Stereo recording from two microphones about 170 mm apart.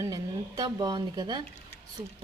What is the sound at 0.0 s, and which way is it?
Speech, 20° right (ahead or behind).